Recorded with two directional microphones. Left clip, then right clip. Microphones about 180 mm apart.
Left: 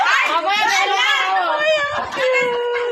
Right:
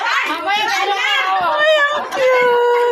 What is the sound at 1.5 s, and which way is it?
Speech, 25° right (ahead or behind).